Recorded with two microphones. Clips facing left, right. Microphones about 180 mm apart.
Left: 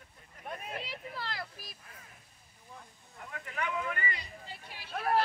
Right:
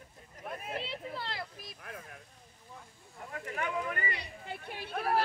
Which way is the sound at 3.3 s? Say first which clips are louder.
Right 1 dB; 40° right (ahead or behind).